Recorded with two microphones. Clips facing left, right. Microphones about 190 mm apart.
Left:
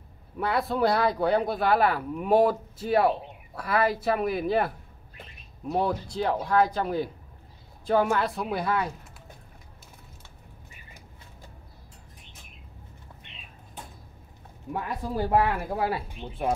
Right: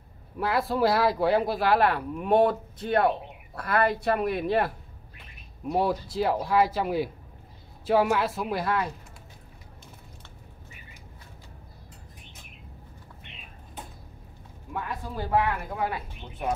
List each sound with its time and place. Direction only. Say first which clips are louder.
0.4 s speech: even; centre (ahead or behind)
14.7 s speech: left 3 dB; 40° left (ahead or behind)